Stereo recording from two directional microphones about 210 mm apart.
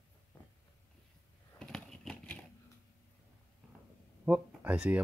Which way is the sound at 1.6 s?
Centre (ahead or behind).